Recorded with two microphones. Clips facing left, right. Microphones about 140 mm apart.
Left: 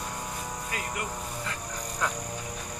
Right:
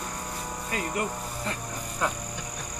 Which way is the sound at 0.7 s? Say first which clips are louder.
Right 7 dB; 30° right (ahead or behind).